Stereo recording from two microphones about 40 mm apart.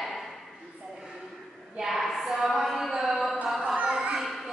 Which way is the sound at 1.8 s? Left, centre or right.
Centre.